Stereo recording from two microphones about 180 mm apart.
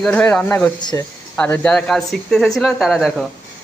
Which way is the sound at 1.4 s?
10° left (ahead or behind).